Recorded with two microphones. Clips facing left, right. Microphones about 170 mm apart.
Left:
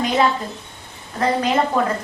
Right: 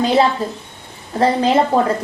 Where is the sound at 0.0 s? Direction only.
30° right (ahead or behind).